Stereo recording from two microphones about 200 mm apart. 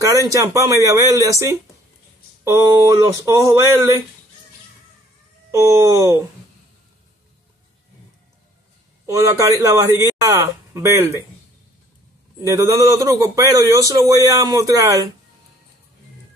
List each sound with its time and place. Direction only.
0.0 s a man's voice: 15° right (ahead or behind)
5.5 s a man's voice: 15° right (ahead or behind)
9.0 s a man's voice: 15° right (ahead or behind)
12.4 s a man's voice: 15° right (ahead or behind)